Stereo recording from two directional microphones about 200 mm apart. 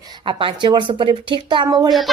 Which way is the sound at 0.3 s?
25° right (ahead or behind).